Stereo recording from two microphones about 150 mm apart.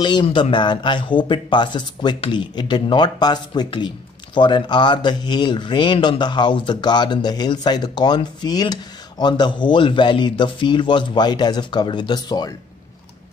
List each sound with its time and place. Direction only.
0.0 s speech: 30° left (ahead or behind)